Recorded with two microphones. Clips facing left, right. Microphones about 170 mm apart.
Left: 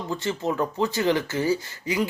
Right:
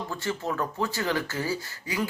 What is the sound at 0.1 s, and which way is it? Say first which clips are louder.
Speech: left 6 dB; 20° left (ahead or behind).